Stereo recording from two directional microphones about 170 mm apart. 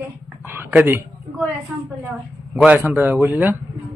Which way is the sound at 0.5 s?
10° right (ahead or behind).